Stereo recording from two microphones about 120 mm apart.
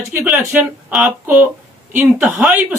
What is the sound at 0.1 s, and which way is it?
Speech, 10° right (ahead or behind).